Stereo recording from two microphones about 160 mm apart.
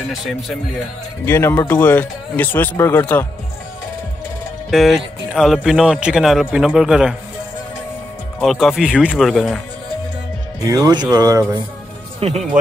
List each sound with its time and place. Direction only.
0.1 s speech: centre (ahead or behind)
1.2 s speech: 15° left (ahead or behind)
4.6 s speech: centre (ahead or behind)
8.4 s speech: centre (ahead or behind)
10.7 s speech: 25° right (ahead or behind)
12.2 s speech: 40° right (ahead or behind)